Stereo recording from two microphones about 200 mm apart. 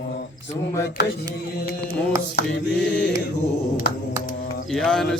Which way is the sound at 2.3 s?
60° left (ahead or behind).